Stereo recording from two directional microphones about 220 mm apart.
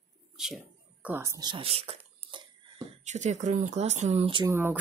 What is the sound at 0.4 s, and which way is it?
Speech, 5° right (ahead or behind).